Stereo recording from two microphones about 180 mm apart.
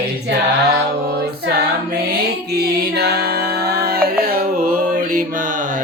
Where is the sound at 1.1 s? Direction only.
60° right (ahead or behind).